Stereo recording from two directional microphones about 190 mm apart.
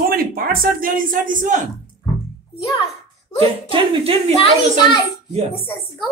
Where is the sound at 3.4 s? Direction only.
25° right (ahead or behind).